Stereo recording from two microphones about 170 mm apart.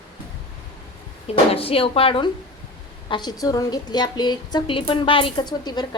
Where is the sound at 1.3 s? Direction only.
35° left (ahead or behind).